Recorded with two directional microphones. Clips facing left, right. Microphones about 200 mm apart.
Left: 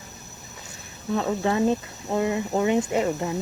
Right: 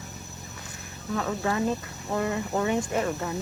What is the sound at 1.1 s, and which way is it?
Speech, 25° left (ahead or behind).